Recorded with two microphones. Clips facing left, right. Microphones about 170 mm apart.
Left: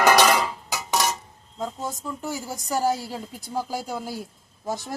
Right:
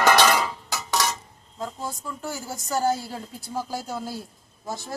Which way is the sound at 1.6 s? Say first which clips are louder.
Left 2 dB; 20° left (ahead or behind).